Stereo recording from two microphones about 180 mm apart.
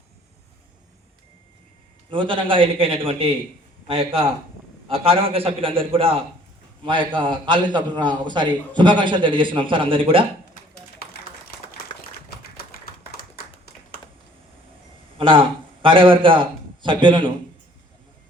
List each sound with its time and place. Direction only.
2.0 s a man's voice: 30° right (ahead or behind)
12.4 s tap: 60° left (ahead or behind)
15.2 s a man's voice: 30° right (ahead or behind)